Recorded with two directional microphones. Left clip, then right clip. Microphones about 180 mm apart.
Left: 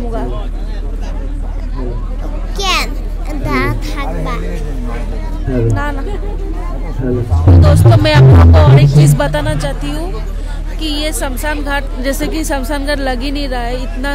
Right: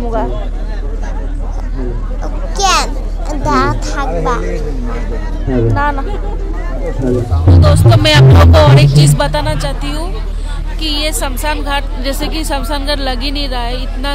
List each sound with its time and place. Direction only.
2.5 s a sound: 15° left (ahead or behind)
5.7 s speech: 5° right (ahead or behind)
7.4 s speech: 30° left (ahead or behind)
7.8 s music: 15° left (ahead or behind)
8.4 s music: 5° right (ahead or behind)
8.9 s a woman's voice: 25° left (ahead or behind)